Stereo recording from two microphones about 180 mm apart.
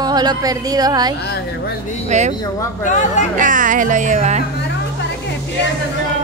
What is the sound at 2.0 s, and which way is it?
Speech, 40° right (ahead or behind).